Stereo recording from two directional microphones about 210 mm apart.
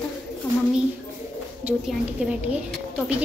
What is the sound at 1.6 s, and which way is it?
Speech, 5° right (ahead or behind).